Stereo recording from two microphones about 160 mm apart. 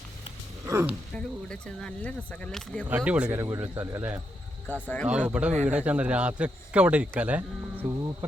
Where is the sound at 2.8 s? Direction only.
10° right (ahead or behind).